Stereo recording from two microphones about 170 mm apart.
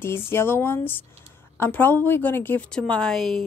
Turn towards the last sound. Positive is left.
turn(degrees=0)  # may be behind; listen again after turning